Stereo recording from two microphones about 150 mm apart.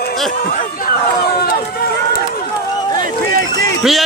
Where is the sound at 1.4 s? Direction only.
80° left.